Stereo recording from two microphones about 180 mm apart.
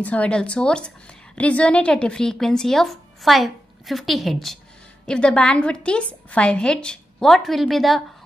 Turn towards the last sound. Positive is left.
turn(degrees=0)  # may be behind; listen again after turning